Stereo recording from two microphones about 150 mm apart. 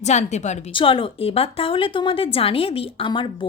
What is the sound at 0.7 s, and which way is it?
Speech, 35° left (ahead or behind).